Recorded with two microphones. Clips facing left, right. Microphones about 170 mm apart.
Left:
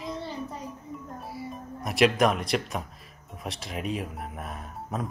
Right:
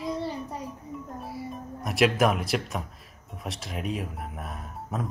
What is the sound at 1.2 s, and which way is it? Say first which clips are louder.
Speech: right 1 dB; centre (ahead or behind).